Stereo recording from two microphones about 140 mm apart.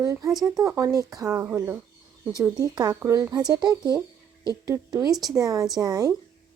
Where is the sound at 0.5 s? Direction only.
20° right (ahead or behind).